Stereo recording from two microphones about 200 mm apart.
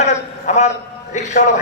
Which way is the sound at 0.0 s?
35° left (ahead or behind).